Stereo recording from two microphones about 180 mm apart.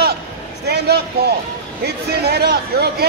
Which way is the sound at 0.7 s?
65° right (ahead or behind).